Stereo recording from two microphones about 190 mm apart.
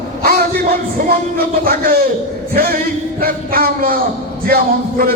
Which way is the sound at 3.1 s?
50° right (ahead or behind).